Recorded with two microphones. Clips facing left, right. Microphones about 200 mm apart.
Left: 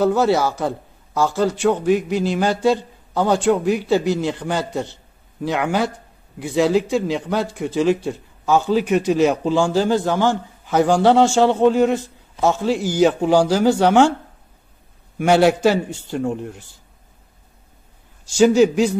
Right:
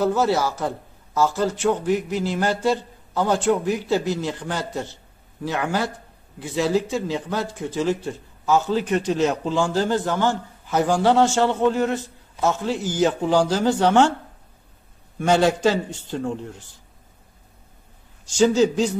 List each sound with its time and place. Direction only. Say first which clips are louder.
0.0 s speech: left 4 dB; 15° left (ahead or behind)
15.1 s speech: left 4 dB; 10° left (ahead or behind)
18.4 s speech: left 4 dB; 10° left (ahead or behind)